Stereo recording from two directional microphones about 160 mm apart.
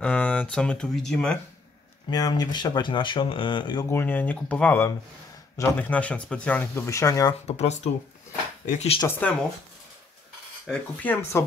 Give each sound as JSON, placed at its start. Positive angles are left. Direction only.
{"t": 0.0, "sound": "speech", "side_deg": 10}
{"t": 2.0, "sound": "speech", "side_deg": 25}
{"t": 3.9, "sound": "speech", "side_deg": 10}
{"t": 7.4, "sound": "speech", "side_deg": 45}
{"t": 9.0, "sound": "speech", "side_deg": 10}
{"t": 10.7, "sound": "speech", "side_deg": 10}